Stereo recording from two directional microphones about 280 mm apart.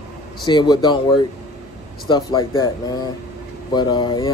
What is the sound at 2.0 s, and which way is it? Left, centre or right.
Speech, centre.